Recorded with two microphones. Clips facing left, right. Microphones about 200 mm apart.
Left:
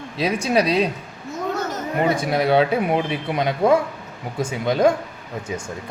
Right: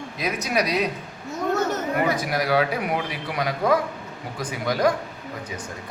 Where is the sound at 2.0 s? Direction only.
25° left (ahead or behind).